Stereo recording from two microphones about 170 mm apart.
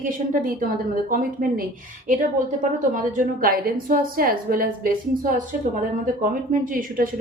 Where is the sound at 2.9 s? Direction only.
55° right (ahead or behind).